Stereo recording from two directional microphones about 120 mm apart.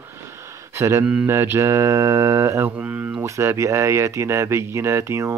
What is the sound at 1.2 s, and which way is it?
Mantra, 20° right (ahead or behind).